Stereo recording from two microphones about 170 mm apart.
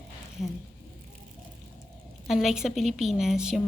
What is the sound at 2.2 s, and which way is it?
A woman's voice, centre (ahead or behind).